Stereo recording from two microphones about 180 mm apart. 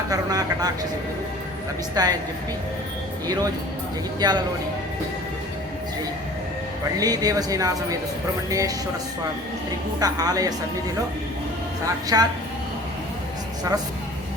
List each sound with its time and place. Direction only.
0.1 s a sound: 20° right (ahead or behind)
2.0 s a woman's voice: 20° right (ahead or behind)
4.2 s a woman's voice: 25° right (ahead or behind)
7.0 s a woman's voice: 20° right (ahead or behind)
10.0 s a woman's voice: 20° right (ahead or behind)
12.1 s a woman's voice: 20° right (ahead or behind)